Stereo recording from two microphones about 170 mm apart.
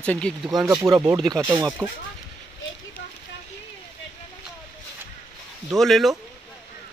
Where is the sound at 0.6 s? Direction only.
20° right (ahead or behind).